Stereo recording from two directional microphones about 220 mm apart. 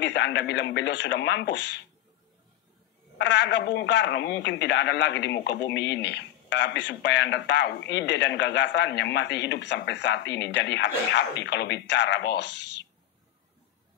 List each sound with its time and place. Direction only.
0.0 s speech: 50° left (ahead or behind)
3.2 s speech: 55° left (ahead or behind)